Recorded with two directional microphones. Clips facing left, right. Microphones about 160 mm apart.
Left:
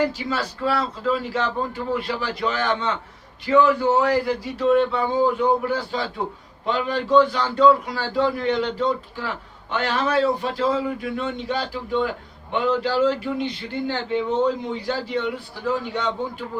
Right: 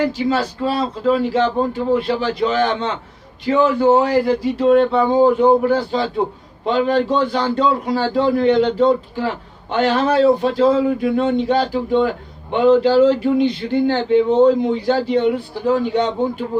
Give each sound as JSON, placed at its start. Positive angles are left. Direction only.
{"t": 0.1, "sound": "a man's voice", "side_deg": -25}